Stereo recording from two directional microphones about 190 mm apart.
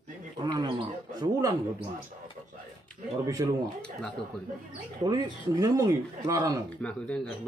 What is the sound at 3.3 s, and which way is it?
Speech, 15° right (ahead or behind).